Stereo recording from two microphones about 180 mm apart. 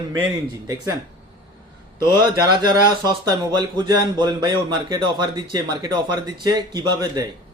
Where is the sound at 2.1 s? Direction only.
25° right (ahead or behind).